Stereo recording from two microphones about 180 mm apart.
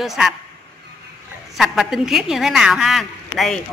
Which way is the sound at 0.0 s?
Centre (ahead or behind).